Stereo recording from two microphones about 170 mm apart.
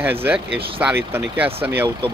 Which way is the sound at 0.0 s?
10° right (ahead or behind).